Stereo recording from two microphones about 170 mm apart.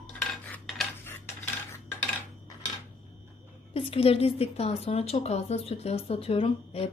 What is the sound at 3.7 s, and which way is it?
A woman's voice, 35° left (ahead or behind).